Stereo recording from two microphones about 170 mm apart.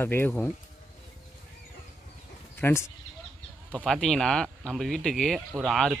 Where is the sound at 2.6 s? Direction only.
15° left (ahead or behind).